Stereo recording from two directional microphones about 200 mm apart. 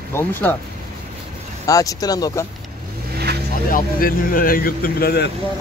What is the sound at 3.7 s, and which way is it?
Speech, 45° left (ahead or behind).